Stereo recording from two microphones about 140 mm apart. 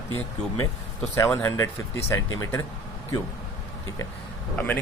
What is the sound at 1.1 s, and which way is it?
Speech, 20° left (ahead or behind).